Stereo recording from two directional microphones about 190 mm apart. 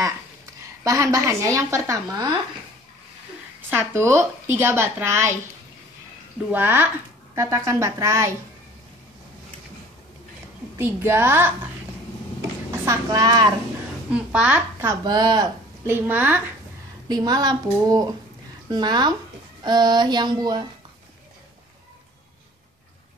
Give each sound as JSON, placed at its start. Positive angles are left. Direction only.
{"t": 0.6, "sound": "speech", "side_deg": -15}
{"t": 3.7, "sound": "speech", "side_deg": -15}
{"t": 6.5, "sound": "speech", "side_deg": -10}
{"t": 10.8, "sound": "speech", "side_deg": -10}
{"t": 12.7, "sound": "speech", "side_deg": -15}
{"t": 14.1, "sound": "speech", "side_deg": -5}
{"t": 17.1, "sound": "a sound", "side_deg": -20}